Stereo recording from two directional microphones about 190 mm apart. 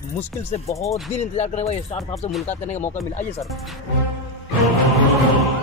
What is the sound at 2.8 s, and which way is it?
Speech, 10° left (ahead or behind).